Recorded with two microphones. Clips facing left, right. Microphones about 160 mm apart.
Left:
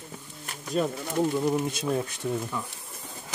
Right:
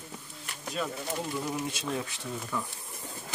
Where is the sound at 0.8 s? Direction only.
45° left (ahead or behind).